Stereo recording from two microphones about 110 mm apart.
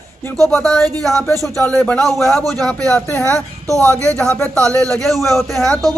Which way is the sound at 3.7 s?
25° right (ahead or behind).